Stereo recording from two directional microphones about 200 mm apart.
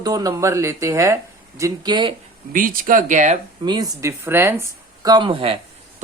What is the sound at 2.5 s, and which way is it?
Speech, 45° right (ahead or behind).